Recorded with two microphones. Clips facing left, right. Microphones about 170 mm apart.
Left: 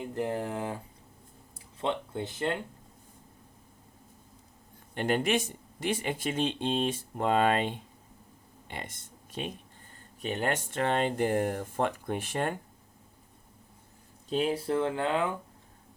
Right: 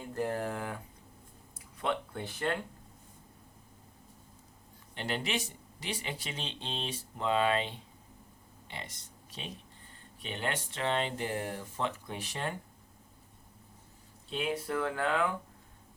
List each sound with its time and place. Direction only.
0.0 s speech: 20° left (ahead or behind)
4.9 s speech: 50° left (ahead or behind)
14.3 s speech: 35° left (ahead or behind)